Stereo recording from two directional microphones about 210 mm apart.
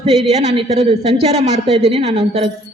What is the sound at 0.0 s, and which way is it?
A man's voice, 30° right (ahead or behind).